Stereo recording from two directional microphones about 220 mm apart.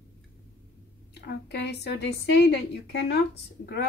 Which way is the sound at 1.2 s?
50° left (ahead or behind).